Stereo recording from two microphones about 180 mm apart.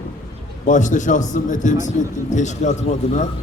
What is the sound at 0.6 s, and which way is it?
A man's voice, 45° left (ahead or behind).